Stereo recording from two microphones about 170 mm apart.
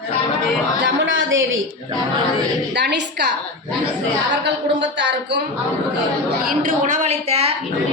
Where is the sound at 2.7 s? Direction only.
90° right.